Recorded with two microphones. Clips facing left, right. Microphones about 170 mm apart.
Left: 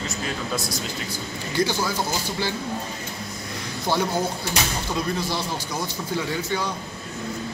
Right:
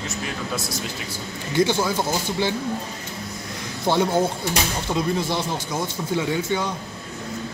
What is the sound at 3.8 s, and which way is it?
Speech, 25° right (ahead or behind).